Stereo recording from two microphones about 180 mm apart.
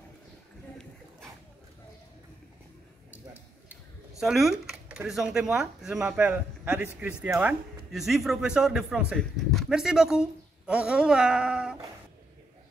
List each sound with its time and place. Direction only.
4.2 s speech: centre (ahead or behind)